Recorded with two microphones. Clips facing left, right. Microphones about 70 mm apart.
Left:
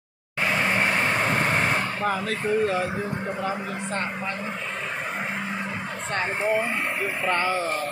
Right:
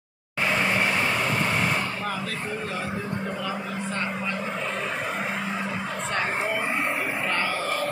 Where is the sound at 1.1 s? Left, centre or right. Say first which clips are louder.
Left 2 dB; left.